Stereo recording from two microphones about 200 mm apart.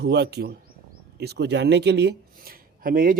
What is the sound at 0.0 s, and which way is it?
Speech, 55° right (ahead or behind).